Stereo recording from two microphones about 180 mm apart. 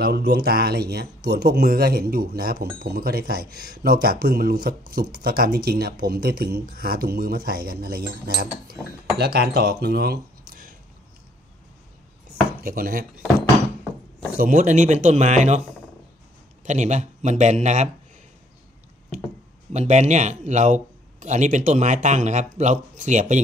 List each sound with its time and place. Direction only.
0.0 s a sound: 70° right (ahead or behind)
0.4 s speech: 60° right (ahead or behind)
12.5 s speech: 55° right (ahead or behind)
14.3 s speech: 50° right (ahead or behind)
16.6 s a man's voice: 40° right (ahead or behind)
19.7 s a man's voice: 40° right (ahead or behind)